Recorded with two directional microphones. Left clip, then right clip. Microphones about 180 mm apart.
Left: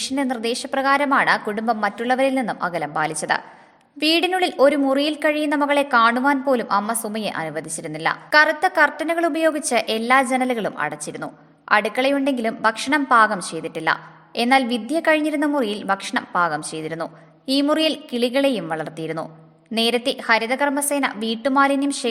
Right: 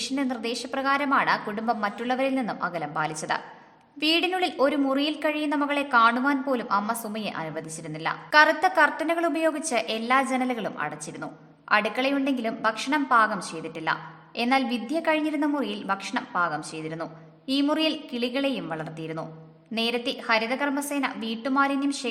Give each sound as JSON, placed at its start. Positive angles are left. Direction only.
{"t": 0.0, "sound": "a woman's voice", "side_deg": 25}